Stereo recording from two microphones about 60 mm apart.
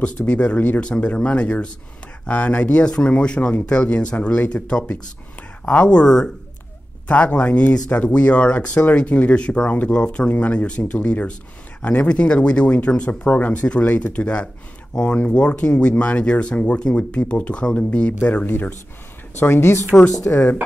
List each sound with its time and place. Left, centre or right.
0.3 s speech: left
5.7 s speech: left
18.2 s speech: left